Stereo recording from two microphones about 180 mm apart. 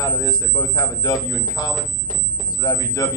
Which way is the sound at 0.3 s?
20° left (ahead or behind).